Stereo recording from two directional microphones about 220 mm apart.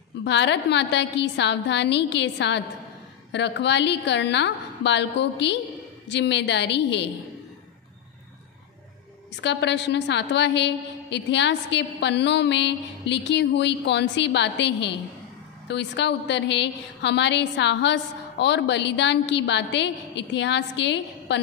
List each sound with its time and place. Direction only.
0.2 s a woman's voice: 50° left (ahead or behind)
9.3 s a woman's voice: 55° left (ahead or behind)